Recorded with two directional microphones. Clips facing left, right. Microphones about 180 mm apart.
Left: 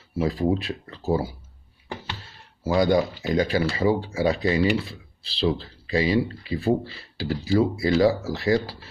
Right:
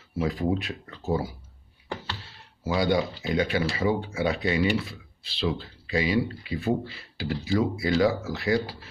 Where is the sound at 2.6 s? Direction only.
45° left (ahead or behind).